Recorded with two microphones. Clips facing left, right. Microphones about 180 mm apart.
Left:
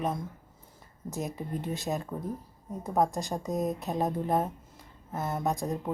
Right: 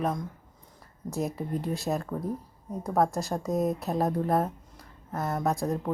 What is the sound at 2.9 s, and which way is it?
Speech, 15° left (ahead or behind).